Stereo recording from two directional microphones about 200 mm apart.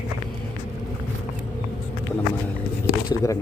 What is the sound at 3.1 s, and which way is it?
Speech, 15° left (ahead or behind).